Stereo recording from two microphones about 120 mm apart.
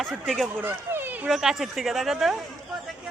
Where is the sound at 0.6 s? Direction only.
20° right (ahead or behind).